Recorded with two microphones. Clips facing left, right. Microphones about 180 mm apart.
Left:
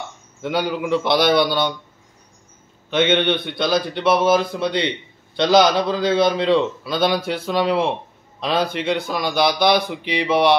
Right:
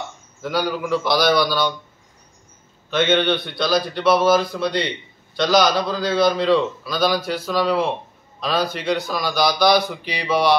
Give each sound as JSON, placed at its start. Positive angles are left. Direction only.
{"t": 0.4, "sound": "a man's voice", "side_deg": 25}
{"t": 2.9, "sound": "a man's voice", "side_deg": 20}